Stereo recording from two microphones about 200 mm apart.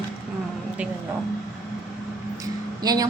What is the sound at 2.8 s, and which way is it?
Speech, 20° right (ahead or behind).